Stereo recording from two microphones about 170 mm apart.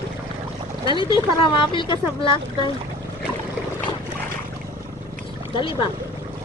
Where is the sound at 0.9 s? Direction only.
30° left (ahead or behind).